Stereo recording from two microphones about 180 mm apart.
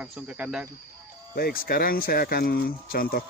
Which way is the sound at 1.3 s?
55° left (ahead or behind).